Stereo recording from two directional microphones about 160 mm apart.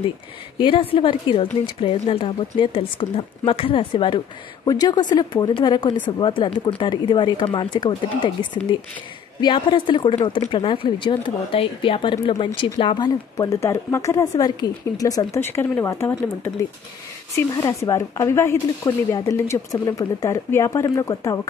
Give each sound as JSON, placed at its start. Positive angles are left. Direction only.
{"t": 0.6, "sound": "a woman's voice", "side_deg": 30}